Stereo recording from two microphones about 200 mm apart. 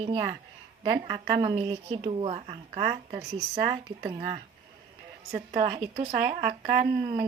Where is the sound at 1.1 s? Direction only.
25° right (ahead or behind).